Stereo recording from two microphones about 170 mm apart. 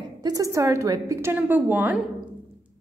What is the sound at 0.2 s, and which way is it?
A woman's voice, 20° right (ahead or behind).